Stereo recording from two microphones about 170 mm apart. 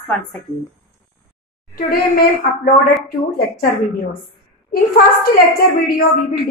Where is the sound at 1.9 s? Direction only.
60° left (ahead or behind).